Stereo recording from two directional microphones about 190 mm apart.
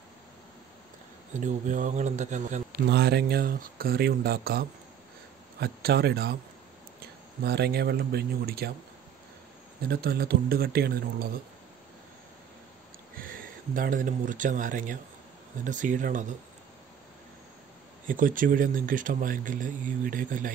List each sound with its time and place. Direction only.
1.4 s speech: 40° right (ahead or behind)
2.9 s speech: 60° right (ahead or behind)
9.8 s speech: 55° right (ahead or behind)
13.2 s speech: 45° right (ahead or behind)
18.0 s speech: 45° right (ahead or behind)